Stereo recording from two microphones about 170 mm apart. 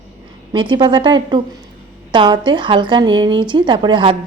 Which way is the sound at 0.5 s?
30° right (ahead or behind).